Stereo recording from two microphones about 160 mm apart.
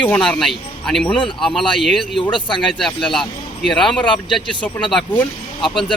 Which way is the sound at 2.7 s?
Centre (ahead or behind).